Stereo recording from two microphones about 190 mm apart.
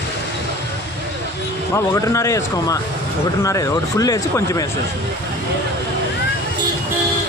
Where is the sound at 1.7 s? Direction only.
15° left (ahead or behind).